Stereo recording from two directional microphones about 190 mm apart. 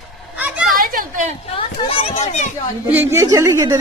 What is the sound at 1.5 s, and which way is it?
Speech, 30° left (ahead or behind).